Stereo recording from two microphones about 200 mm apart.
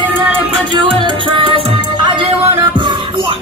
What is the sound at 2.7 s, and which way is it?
Music, 25° right (ahead or behind).